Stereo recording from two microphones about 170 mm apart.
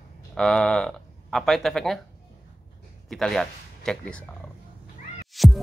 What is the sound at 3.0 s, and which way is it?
Speech, centre (ahead or behind).